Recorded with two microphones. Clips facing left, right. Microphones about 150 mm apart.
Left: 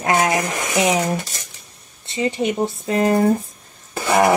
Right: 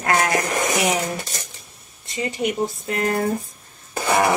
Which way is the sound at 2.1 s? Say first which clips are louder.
Left 4 dB; 30° left (ahead or behind).